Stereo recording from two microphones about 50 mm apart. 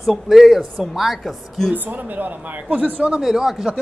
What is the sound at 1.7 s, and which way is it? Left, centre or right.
Speech, right.